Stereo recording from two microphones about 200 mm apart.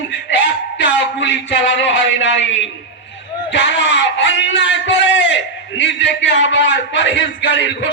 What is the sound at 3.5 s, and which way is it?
A man's voice, 60° left (ahead or behind).